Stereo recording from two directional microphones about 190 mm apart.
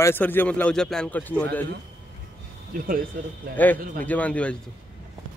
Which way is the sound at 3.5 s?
10° left (ahead or behind).